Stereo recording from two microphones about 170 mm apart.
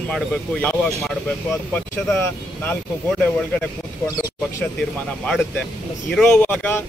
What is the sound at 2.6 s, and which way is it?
Speech, 10° left (ahead or behind).